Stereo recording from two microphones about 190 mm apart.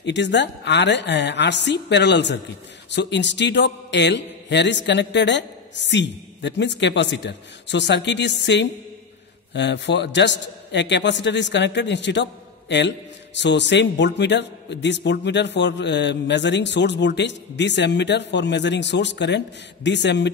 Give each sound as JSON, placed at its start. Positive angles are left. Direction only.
{"t": 0.0, "sound": "a man's voice", "side_deg": 70}